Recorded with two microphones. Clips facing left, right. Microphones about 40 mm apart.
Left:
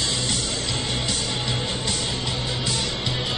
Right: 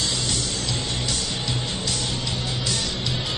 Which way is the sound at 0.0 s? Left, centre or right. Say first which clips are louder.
Left 1 dB; left.